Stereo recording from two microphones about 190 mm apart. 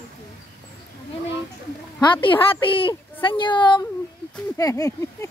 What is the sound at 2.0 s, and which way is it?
A woman's voice, 25° left (ahead or behind).